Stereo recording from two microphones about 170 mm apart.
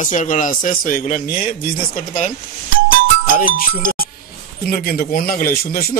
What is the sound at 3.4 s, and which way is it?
A man's voice, 55° left (ahead or behind).